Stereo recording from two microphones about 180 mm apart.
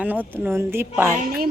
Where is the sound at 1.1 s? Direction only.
50° right (ahead or behind).